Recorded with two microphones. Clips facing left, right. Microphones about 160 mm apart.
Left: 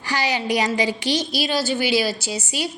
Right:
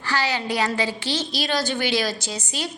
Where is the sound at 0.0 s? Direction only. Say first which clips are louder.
Left 1 dB; 15° left (ahead or behind).